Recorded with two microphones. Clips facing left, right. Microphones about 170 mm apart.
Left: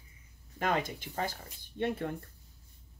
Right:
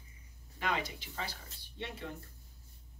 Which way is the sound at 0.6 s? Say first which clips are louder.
Left 5 dB; 50° left (ahead or behind).